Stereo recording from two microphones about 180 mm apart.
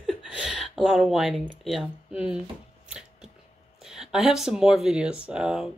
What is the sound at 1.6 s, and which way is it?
Speech, centre (ahead or behind).